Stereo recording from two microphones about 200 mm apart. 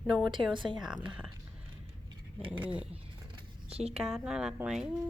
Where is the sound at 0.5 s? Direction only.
25° right (ahead or behind).